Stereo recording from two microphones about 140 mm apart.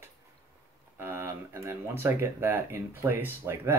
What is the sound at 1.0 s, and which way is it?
Speech, 15° right (ahead or behind).